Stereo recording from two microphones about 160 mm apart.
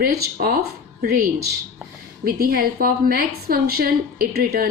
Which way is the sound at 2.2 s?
70° right (ahead or behind).